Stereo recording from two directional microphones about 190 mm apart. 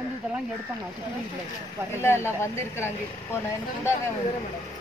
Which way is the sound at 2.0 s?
15° left (ahead or behind).